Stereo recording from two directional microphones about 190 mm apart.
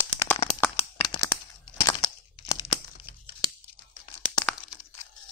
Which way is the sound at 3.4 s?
20° left (ahead or behind).